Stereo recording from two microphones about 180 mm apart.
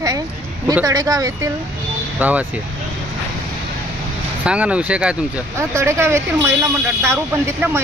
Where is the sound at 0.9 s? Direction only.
20° right (ahead or behind).